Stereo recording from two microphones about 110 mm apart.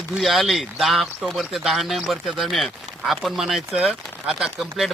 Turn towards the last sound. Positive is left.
turn(degrees=-5)  # may be behind; listen again after turning